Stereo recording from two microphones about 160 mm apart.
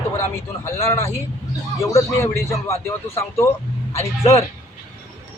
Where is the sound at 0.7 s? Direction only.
15° left (ahead or behind).